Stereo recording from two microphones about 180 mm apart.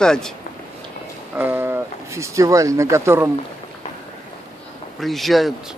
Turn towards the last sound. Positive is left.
turn(degrees=0)  # may be behind; listen again after turning